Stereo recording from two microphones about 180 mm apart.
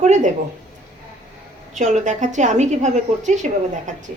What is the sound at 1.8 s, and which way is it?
A woman's voice, 45° right (ahead or behind).